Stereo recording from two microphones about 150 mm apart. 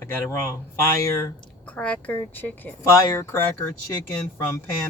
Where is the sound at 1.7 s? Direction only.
10° left (ahead or behind).